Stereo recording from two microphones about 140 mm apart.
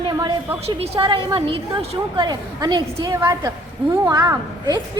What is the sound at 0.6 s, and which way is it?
A woman's voice, 45° right (ahead or behind).